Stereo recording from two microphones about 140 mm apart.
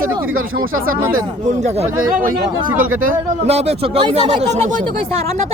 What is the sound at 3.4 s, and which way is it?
Speech, 50° right (ahead or behind).